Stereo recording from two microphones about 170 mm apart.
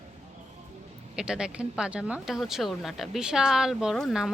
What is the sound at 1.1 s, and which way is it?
Speech, 5° right (ahead or behind).